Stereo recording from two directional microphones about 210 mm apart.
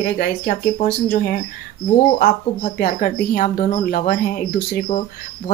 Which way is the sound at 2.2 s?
45° left (ahead or behind).